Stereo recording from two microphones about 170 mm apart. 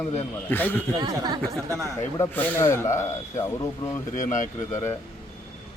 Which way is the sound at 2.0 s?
15° left (ahead or behind).